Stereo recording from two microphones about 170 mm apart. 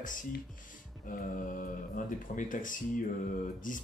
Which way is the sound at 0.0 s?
50° left (ahead or behind).